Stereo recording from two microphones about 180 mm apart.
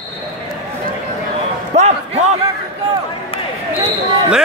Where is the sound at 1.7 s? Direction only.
40° right (ahead or behind).